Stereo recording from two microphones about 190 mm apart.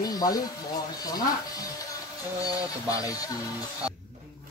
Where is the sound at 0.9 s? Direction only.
20° left (ahead or behind).